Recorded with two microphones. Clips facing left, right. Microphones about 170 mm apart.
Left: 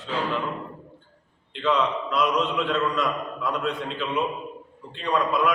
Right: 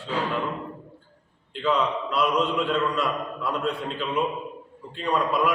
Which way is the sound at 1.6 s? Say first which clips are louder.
Left 1 dB; 5° right (ahead or behind).